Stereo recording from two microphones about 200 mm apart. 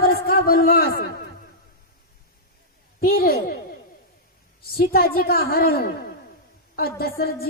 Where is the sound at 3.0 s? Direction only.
50° left (ahead or behind).